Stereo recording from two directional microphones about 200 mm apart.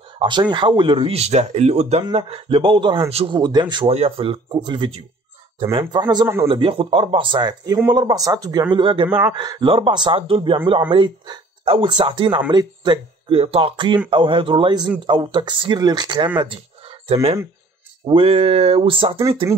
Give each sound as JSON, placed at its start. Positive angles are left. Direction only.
{"t": 0.2, "sound": "a man's voice", "side_deg": -20}